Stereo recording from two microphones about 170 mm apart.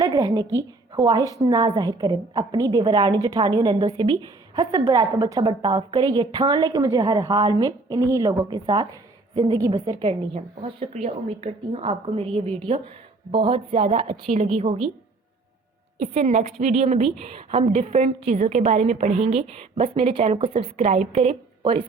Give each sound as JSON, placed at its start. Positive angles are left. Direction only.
{"t": 0.0, "sound": "a woman's voice", "side_deg": -20}
{"t": 10.0, "sound": "a woman's voice", "side_deg": -35}
{"t": 13.7, "sound": "a woman's voice", "side_deg": -50}
{"t": 16.0, "sound": "a woman's voice", "side_deg": -45}
{"t": 21.6, "sound": "speech", "side_deg": -30}